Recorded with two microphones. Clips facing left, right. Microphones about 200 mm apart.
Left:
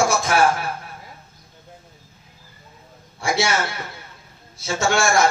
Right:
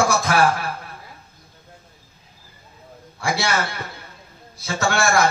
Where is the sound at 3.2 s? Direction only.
60° right (ahead or behind).